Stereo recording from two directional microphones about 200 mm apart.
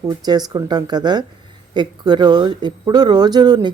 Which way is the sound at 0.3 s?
20° right (ahead or behind).